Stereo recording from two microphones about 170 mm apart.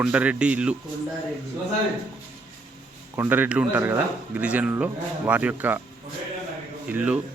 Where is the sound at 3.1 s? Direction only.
10° right (ahead or behind).